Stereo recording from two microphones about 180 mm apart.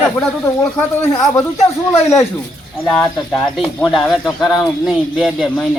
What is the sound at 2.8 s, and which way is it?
Speech, 5° left (ahead or behind).